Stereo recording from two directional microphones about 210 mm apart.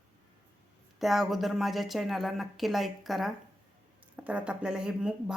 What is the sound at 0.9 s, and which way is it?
Speech, centre (ahead or behind).